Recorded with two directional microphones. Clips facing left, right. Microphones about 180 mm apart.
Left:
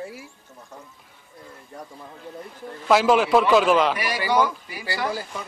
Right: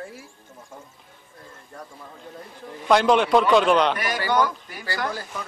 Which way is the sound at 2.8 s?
5° left (ahead or behind).